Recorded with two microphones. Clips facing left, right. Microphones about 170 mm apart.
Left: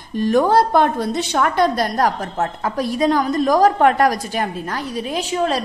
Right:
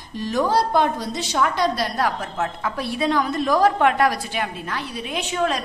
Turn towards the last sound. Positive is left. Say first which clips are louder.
# left 3 dB
turn(degrees=35)  # may be behind; listen again after turning